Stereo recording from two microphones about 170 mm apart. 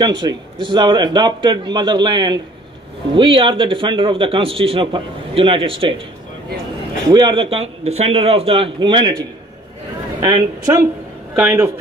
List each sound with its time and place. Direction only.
0.0 s a man's voice: 25° right (ahead or behind)
7.1 s a man's voice: 25° right (ahead or behind)
10.2 s a man's voice: 20° right (ahead or behind)
11.3 s speech: 10° right (ahead or behind)